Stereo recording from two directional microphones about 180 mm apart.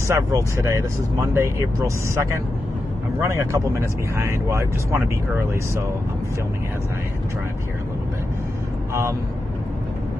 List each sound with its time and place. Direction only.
0.1 s speech: 20° right (ahead or behind)